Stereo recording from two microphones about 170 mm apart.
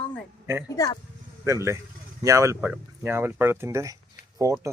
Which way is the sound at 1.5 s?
15° right (ahead or behind).